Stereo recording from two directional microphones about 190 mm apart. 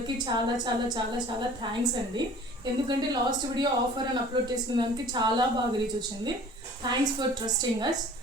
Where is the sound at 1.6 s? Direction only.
25° right (ahead or behind).